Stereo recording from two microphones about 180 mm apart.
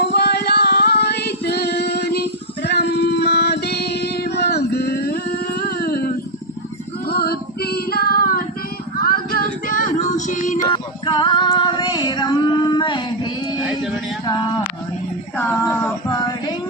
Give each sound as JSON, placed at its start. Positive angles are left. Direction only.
{"t": 0.0, "sound": "music", "side_deg": 65}
{"t": 7.1, "sound": "female singing", "side_deg": 60}
{"t": 9.0, "sound": "a sound", "side_deg": 55}
{"t": 9.7, "sound": "child singing", "side_deg": 45}
{"t": 10.7, "sound": "female singing", "side_deg": 25}
{"t": 15.4, "sound": "a sound", "side_deg": 10}
{"t": 16.0, "sound": "female singing", "side_deg": 20}